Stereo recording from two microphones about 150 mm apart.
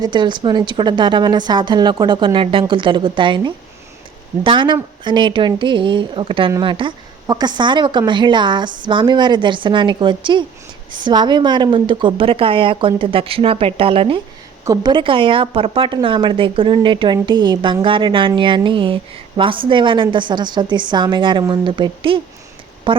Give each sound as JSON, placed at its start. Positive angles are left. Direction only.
{"t": 0.0, "sound": "speech", "side_deg": -30}
{"t": 14.6, "sound": "speech", "side_deg": -25}